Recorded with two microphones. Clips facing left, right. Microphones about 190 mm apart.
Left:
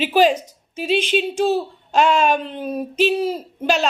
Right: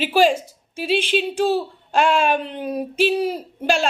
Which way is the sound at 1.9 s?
50° right (ahead or behind).